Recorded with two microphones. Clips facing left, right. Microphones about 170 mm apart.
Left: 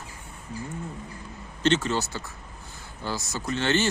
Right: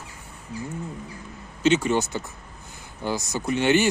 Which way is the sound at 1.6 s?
10° right (ahead or behind).